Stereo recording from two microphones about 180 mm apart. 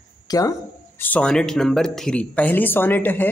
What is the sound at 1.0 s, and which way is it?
Speech, 10° left (ahead or behind).